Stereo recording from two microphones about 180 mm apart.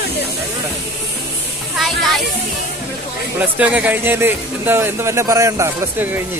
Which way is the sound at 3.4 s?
10° right (ahead or behind).